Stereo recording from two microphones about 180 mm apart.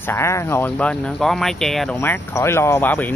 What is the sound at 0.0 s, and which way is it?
Speech, 15° left (ahead or behind).